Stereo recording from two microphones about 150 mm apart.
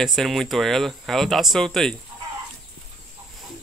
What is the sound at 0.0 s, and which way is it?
Speech, centre (ahead or behind).